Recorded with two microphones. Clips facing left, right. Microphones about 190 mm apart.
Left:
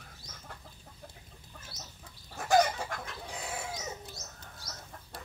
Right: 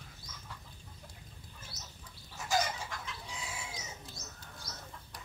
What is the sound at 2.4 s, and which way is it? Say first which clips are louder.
Chicken: left 8 dB; 60° left (ahead or behind).